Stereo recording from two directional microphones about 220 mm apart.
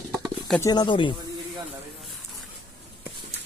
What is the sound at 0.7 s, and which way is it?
Speech, 20° left (ahead or behind).